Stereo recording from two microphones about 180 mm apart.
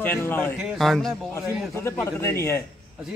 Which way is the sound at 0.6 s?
Centre (ahead or behind).